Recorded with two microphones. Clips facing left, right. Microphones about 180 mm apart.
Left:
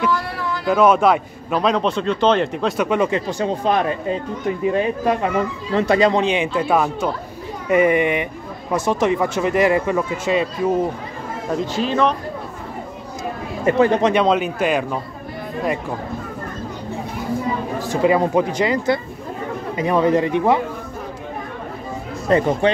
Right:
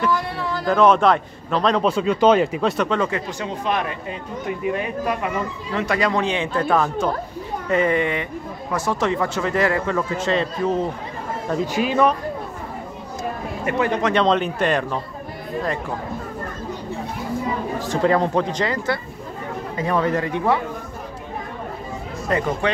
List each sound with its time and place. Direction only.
0.7 s a man's voice: 5° left (ahead or behind)
2.8 s speech: 15° left (ahead or behind)
3.2 s speech: 30° left (ahead or behind); by 10.8 s 10° left (ahead or behind)
11.6 s speech: 10° right (ahead or behind)
13.7 s speech: 30° left (ahead or behind)
14.1 s speech: 5° left (ahead or behind)
17.7 s speech: 10° left (ahead or behind)
22.3 s speech: 30° left (ahead or behind)